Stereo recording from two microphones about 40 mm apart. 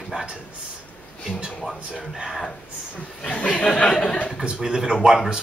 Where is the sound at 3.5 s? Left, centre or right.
Left.